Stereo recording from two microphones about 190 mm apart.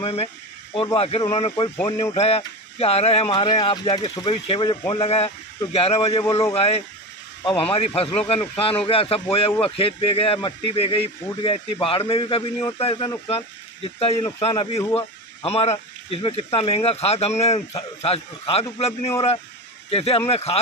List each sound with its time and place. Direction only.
0.0 s speech: 30° left (ahead or behind)